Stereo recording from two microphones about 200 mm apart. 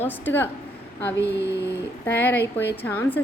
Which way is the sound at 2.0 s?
10° left (ahead or behind).